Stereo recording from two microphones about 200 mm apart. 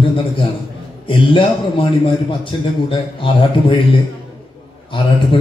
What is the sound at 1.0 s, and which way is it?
A man's voice, 25° left (ahead or behind).